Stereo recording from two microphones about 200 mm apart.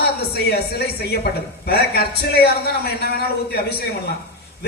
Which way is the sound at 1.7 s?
50° left (ahead or behind).